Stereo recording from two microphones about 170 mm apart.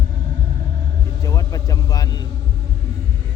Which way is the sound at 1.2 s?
20° left (ahead or behind).